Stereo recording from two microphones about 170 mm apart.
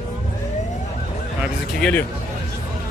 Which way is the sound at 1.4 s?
5° left (ahead or behind).